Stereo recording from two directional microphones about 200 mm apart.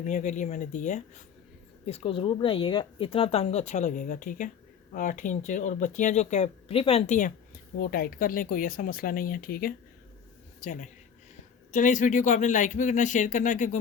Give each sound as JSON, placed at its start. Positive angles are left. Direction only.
{"t": 0.1, "sound": "a woman's voice", "side_deg": 40}